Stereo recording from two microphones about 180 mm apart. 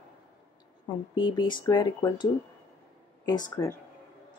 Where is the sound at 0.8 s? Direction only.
25° left (ahead or behind).